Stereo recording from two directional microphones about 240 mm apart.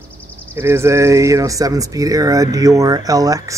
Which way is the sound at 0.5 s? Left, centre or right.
Centre.